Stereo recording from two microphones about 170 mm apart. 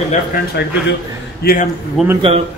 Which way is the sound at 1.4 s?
55° left (ahead or behind).